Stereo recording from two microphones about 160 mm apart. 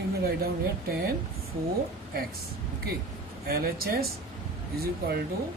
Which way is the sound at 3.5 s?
70° right (ahead or behind).